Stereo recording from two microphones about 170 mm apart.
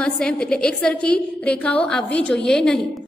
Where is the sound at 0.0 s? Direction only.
5° left (ahead or behind).